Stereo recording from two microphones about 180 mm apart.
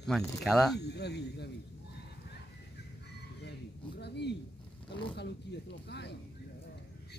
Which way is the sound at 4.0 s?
70° left (ahead or behind).